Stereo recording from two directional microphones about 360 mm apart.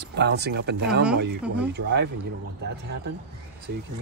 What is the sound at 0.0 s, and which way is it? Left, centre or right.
Speech, right.